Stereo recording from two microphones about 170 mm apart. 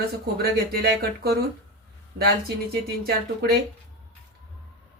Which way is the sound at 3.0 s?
65° right (ahead or behind).